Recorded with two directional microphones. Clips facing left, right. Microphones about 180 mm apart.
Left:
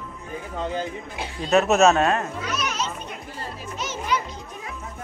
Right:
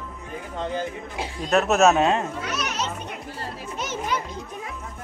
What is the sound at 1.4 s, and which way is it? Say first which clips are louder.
Speech: left 1 dB; centre (ahead or behind).